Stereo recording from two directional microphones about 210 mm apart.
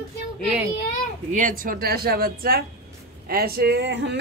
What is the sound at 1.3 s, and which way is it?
Speech, 40° right (ahead or behind).